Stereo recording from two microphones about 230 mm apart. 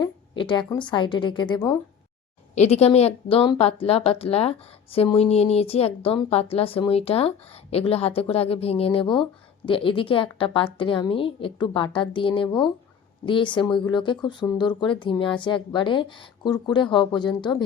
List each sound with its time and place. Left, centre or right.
0.0 s a woman's voice: centre
2.6 s speech: left